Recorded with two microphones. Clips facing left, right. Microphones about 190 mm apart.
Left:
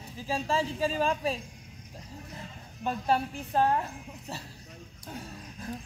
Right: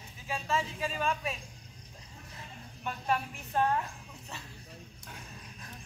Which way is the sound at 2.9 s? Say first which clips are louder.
Left 5 dB; 30° left (ahead or behind).